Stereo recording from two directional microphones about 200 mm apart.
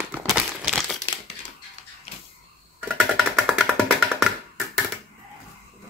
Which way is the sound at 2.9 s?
Centre (ahead or behind).